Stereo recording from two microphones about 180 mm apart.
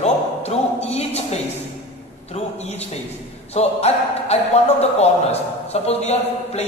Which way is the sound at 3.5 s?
35° left (ahead or behind).